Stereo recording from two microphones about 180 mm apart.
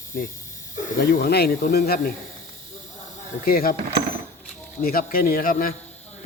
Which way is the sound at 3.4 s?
55° left (ahead or behind).